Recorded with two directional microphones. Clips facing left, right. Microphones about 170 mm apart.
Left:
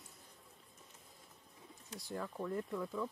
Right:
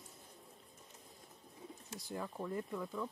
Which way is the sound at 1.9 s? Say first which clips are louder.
Left 1 dB; 5° right (ahead or behind).